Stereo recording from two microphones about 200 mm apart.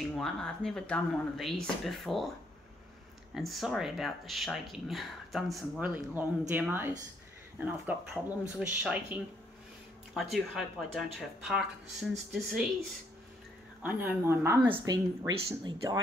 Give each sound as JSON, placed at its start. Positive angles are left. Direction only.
{"t": 0.1, "sound": "speech", "side_deg": 5}
{"t": 3.3, "sound": "speech", "side_deg": 0}
{"t": 13.8, "sound": "a woman's voice", "side_deg": -10}
{"t": 14.7, "sound": "speech", "side_deg": -25}